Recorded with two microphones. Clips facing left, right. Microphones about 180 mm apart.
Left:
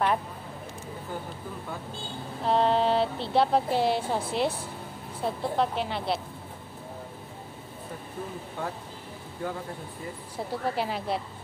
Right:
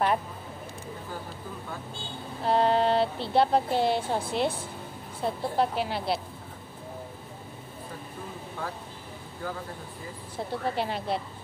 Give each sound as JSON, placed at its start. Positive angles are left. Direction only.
{"t": 2.4, "sound": "speech", "side_deg": 0}
{"t": 10.3, "sound": "speech", "side_deg": 5}